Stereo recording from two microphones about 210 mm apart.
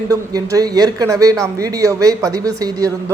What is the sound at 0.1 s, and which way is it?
A man's voice, 15° right (ahead or behind).